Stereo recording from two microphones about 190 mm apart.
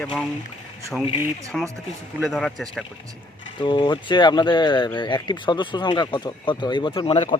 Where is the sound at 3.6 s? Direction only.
25° left (ahead or behind).